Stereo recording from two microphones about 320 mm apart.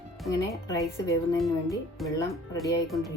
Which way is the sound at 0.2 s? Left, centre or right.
Centre.